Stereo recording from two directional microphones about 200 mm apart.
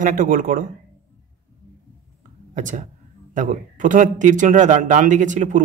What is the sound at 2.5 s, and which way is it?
A man's voice, 40° right (ahead or behind).